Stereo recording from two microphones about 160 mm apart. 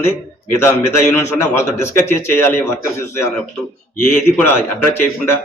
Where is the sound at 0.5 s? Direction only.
15° left (ahead or behind).